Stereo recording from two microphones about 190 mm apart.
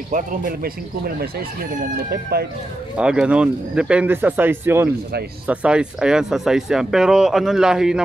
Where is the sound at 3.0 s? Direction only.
5° right (ahead or behind).